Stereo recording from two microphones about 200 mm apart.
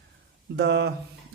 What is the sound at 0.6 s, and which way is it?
Speech, 60° right (ahead or behind).